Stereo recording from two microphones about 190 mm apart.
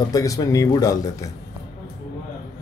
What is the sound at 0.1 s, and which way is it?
Speech, 20° left (ahead or behind).